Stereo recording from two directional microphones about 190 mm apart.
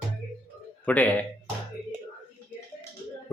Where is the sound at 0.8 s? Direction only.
10° left (ahead or behind).